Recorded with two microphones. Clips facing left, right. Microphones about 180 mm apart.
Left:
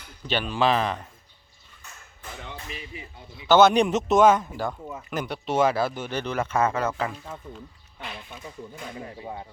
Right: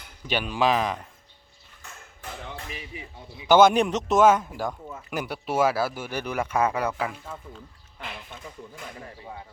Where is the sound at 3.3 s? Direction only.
15° right (ahead or behind).